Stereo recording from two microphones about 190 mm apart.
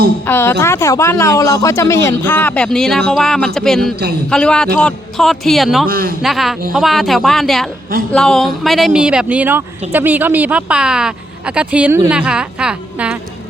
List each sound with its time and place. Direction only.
0.3 s a man's voice: 10° left (ahead or behind)
5.9 s a man's voice: 50° right (ahead or behind)
6.2 s a man's voice: centre (ahead or behind)